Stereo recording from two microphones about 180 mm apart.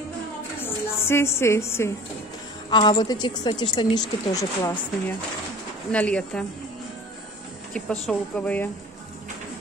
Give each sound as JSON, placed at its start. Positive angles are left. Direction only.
{"t": 0.6, "sound": "a sound", "side_deg": 15}
{"t": 2.7, "sound": "a woman's voice", "side_deg": 25}
{"t": 5.9, "sound": "speech", "side_deg": 5}
{"t": 7.7, "sound": "a woman's voice", "side_deg": 5}